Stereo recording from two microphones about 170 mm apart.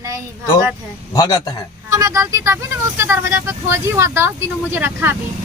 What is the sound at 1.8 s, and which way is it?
Speech, 20° right (ahead or behind).